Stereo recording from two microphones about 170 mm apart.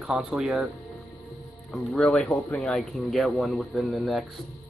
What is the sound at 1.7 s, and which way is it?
Speech, centre (ahead or behind).